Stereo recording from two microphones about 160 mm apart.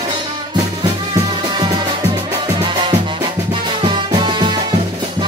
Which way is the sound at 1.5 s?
30° right (ahead or behind).